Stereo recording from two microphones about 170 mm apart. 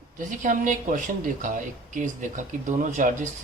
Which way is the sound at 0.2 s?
50° right (ahead or behind).